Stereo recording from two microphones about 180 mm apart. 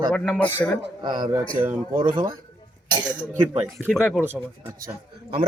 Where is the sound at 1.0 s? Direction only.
25° right (ahead or behind).